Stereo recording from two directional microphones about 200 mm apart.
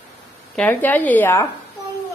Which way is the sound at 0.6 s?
10° left (ahead or behind).